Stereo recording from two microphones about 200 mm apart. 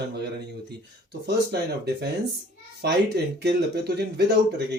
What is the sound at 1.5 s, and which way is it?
Speech, 55° right (ahead or behind).